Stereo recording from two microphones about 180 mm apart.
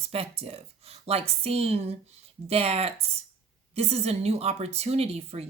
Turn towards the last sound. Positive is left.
turn(degrees=-35)  # may be behind; listen again after turning